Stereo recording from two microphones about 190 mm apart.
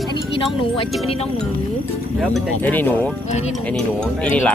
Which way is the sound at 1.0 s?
30° left (ahead or behind).